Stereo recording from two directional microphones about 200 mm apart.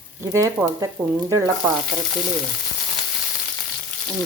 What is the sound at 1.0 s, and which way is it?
Speech, 5° right (ahead or behind).